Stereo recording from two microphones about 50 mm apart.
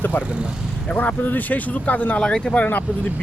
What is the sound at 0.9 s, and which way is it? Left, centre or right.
Speech, left.